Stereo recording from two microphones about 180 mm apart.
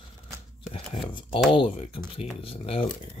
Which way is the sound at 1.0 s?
25° left (ahead or behind).